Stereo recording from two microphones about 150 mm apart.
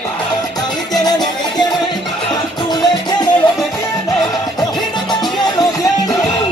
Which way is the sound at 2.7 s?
30° left (ahead or behind).